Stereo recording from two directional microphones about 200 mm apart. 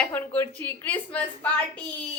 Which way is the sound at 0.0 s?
10° left (ahead or behind).